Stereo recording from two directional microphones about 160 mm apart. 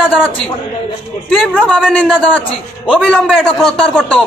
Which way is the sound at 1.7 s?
5° left (ahead or behind).